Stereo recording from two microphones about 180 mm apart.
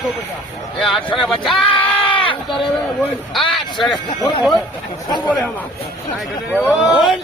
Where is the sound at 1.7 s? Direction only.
30° left (ahead or behind).